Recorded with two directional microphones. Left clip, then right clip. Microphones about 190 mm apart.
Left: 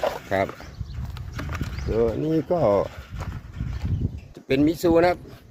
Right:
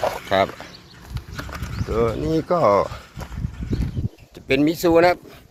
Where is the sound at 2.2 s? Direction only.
15° left (ahead or behind).